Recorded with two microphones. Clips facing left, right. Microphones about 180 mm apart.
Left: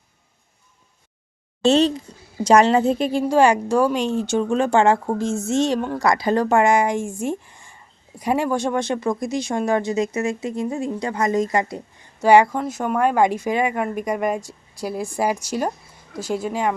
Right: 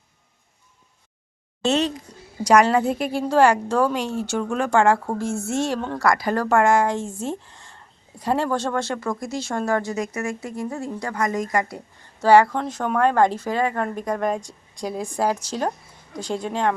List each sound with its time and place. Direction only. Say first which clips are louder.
1.6 s a woman's voice: left 5 dB; 30° left (ahead or behind)
2.1 s a sound: even; 25° left (ahead or behind)
2.4 s a woman's voice: left 2 dB; 25° left (ahead or behind); by 16.7 s 10° left (ahead or behind)